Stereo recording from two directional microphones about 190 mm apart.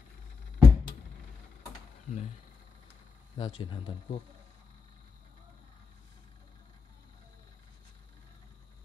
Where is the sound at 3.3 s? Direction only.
25° left (ahead or behind).